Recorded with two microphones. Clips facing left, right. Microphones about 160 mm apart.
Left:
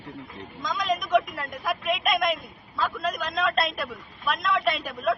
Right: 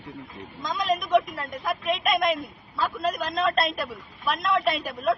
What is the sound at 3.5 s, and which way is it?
Speech, centre (ahead or behind).